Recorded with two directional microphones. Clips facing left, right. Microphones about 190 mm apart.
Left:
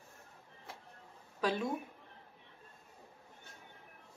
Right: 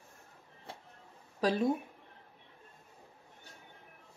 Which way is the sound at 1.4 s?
35° right (ahead or behind).